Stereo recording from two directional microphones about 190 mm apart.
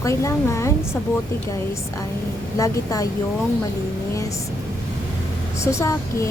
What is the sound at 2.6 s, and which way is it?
Speech, 20° left (ahead or behind).